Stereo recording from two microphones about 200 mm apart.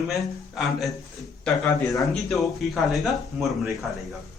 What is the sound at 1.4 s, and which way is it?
A man's voice, 10° left (ahead or behind).